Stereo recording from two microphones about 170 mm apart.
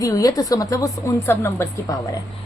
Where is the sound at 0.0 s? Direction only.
20° left (ahead or behind).